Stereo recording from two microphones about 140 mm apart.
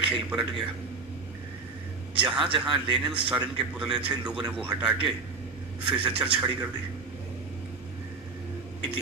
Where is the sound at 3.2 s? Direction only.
5° right (ahead or behind).